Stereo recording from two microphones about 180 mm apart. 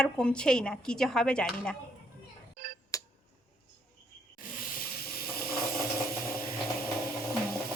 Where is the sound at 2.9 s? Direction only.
20° left (ahead or behind).